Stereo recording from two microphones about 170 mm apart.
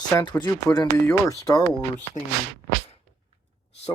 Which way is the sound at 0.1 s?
15° left (ahead or behind).